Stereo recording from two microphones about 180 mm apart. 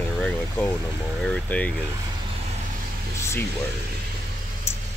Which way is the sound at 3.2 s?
15° left (ahead or behind).